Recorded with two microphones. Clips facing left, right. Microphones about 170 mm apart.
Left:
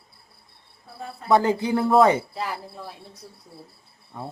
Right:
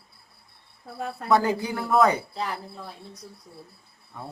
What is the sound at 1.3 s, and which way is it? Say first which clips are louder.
Speech: left 3 dB; 20° left (ahead or behind).